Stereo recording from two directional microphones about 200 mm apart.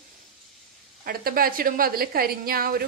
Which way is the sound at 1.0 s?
45° right (ahead or behind).